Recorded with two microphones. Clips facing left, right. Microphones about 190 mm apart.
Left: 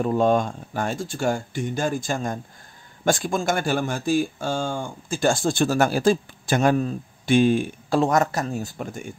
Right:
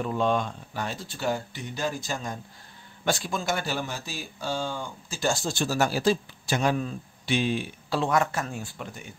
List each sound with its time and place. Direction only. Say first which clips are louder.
0.0 s speech: left 6 dB; 45° left (ahead or behind)